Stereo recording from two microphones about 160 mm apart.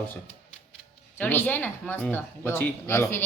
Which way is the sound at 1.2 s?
10° left (ahead or behind).